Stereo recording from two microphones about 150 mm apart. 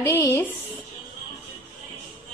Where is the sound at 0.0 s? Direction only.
15° left (ahead or behind).